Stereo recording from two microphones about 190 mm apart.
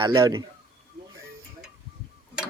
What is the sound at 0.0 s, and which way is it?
Speech, 25° right (ahead or behind).